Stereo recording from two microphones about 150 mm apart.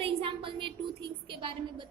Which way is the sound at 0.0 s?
35° right (ahead or behind).